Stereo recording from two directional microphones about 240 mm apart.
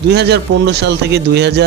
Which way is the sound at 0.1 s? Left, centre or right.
Right.